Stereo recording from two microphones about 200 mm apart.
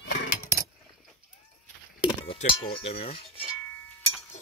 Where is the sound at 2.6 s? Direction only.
30° left (ahead or behind).